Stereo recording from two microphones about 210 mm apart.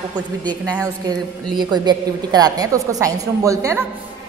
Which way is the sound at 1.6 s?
20° right (ahead or behind).